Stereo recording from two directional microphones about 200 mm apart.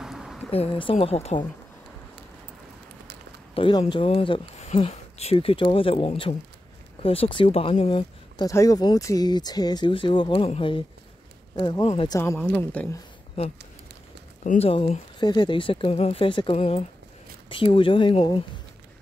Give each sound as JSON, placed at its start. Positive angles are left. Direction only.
{"t": 0.0, "sound": "a sound", "side_deg": 0}
{"t": 0.5, "sound": "speech", "side_deg": 30}
{"t": 3.5, "sound": "speech", "side_deg": 25}
{"t": 8.4, "sound": "speech", "side_deg": 15}
{"t": 12.2, "sound": "a woman's voice", "side_deg": 10}
{"t": 14.4, "sound": "speech", "side_deg": 40}
{"t": 14.7, "sound": "speech", "side_deg": 30}